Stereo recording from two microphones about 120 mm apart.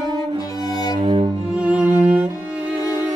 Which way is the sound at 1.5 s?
10° right (ahead or behind).